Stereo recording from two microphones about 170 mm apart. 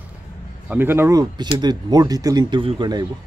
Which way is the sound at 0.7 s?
15° right (ahead or behind).